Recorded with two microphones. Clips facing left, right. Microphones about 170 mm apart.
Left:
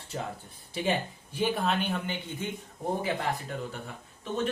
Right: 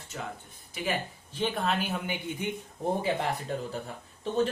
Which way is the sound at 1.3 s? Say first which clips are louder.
Left 1 dB; 5° left (ahead or behind).